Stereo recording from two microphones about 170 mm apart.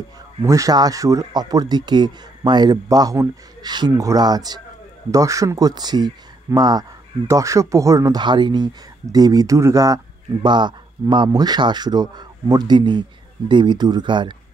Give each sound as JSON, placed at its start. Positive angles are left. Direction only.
{"t": 0.4, "sound": "speech", "side_deg": -20}